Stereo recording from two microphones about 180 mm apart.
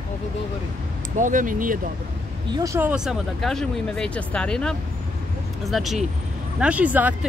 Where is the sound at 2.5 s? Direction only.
15° right (ahead or behind).